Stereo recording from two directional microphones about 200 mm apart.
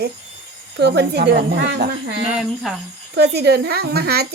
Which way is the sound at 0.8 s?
55° right (ahead or behind).